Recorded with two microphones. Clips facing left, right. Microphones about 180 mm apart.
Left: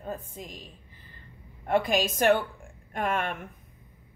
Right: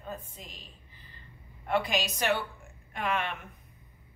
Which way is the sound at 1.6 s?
45° left (ahead or behind).